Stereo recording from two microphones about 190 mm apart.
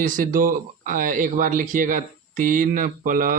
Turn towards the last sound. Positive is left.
turn(degrees=-45)  # may be behind; listen again after turning